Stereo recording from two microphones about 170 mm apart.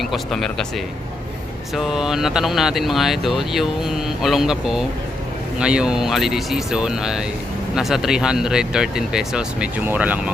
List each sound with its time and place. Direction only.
0.0 s speech: centre (ahead or behind)
1.7 s speech: 5° right (ahead or behind)